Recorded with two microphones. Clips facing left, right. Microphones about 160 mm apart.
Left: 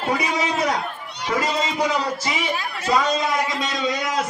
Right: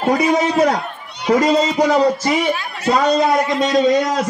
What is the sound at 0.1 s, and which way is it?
Speech, 40° right (ahead or behind).